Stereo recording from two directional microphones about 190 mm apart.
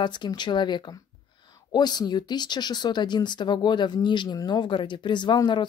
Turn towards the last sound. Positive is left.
turn(degrees=25)  # may be behind; listen again after turning